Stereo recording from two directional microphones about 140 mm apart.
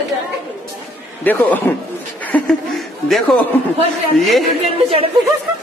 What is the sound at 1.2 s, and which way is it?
Speech, 15° left (ahead or behind).